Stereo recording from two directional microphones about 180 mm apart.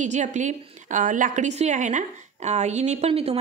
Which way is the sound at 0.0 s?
40° right (ahead or behind).